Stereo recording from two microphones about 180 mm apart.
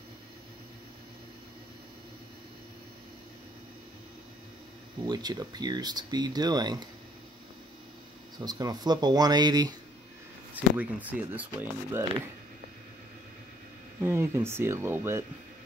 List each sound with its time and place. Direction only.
5.0 s speech: 25° right (ahead or behind)
8.4 s speech: 20° right (ahead or behind)
10.5 s speech: 10° right (ahead or behind)
14.0 s speech: 15° right (ahead or behind)